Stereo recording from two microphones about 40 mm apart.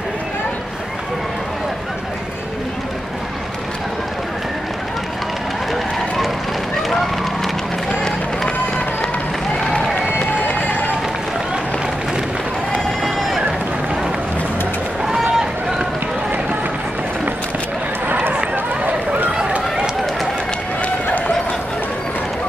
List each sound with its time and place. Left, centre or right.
9.6 s run: centre
13.0 s a sound: centre
15.0 s run: centre
18.0 s run: right